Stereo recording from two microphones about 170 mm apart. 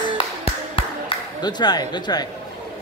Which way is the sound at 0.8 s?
30° left (ahead or behind).